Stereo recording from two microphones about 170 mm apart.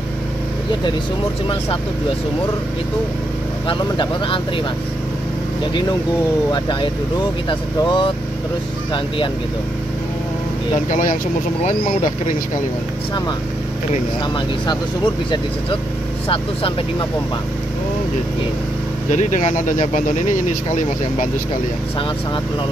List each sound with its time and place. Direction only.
3.6 s speech: 25° left (ahead or behind)
6.5 s speech: 30° left (ahead or behind)
10.9 s speech: 50° left (ahead or behind)
19.1 s speech: 45° left (ahead or behind)